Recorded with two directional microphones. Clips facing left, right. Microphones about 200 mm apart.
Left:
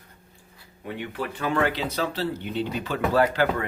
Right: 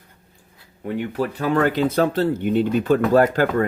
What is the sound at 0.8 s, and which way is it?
Speech, 45° right (ahead or behind).